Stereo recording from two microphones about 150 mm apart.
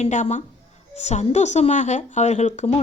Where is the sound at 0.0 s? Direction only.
50° left (ahead or behind).